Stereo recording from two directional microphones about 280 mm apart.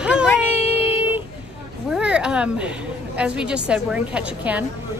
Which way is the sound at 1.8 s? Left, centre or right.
Centre.